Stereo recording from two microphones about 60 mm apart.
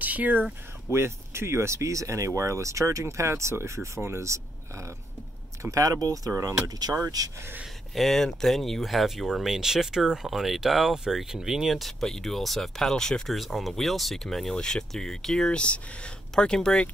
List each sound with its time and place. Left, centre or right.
0.0 s a sound: right
0.8 s speech: right
5.6 s speech: right
7.9 s speech: centre